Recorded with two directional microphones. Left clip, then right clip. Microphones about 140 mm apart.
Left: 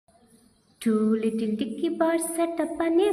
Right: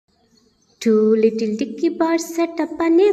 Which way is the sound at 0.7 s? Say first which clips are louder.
Right 10 dB; 40° right (ahead or behind).